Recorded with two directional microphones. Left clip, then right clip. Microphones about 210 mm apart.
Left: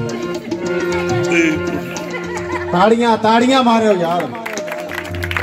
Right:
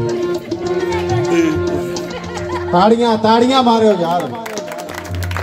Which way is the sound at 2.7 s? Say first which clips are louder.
Right 1 dB; 45° left (ahead or behind).